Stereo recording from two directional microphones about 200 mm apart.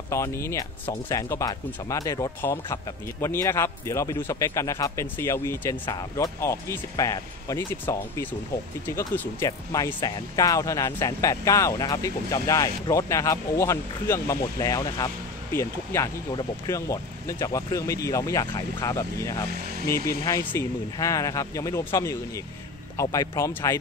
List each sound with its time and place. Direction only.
0.1 s speech: 15° left (ahead or behind)